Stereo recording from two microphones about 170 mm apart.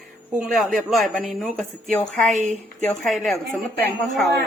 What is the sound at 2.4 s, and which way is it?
Speech, 45° right (ahead or behind).